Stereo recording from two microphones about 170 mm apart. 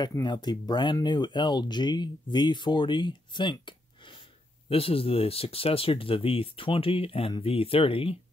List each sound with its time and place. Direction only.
0.0 s speech: 25° left (ahead or behind)